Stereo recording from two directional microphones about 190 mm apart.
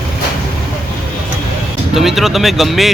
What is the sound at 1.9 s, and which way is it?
Speech, centre (ahead or behind).